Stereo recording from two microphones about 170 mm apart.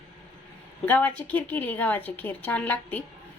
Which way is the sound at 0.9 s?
10° left (ahead or behind).